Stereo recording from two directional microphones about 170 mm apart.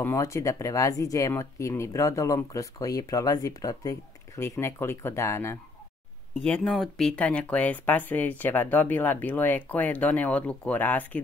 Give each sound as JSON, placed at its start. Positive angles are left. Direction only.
{"t": 0.0, "sound": "speech", "side_deg": 15}
{"t": 6.4, "sound": "speech", "side_deg": 5}